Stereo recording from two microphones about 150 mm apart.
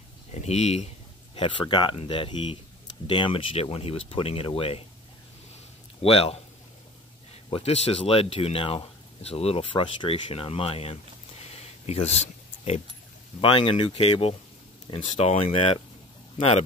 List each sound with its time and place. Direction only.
0.3 s speech: 50° left (ahead or behind)
1.3 s speech: 35° left (ahead or behind)
6.0 s speech: 40° left (ahead or behind)
7.4 s speech: 40° left (ahead or behind)
13.4 s speech: 35° left (ahead or behind)